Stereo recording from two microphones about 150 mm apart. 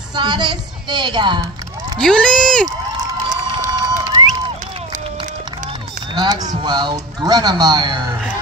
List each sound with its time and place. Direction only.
0.1 s a woman's voice: 30° right (ahead or behind)
2.0 s speech: 5° left (ahead or behind)
3.3 s run: 25° right (ahead or behind)
6.1 s speech: 25° right (ahead or behind)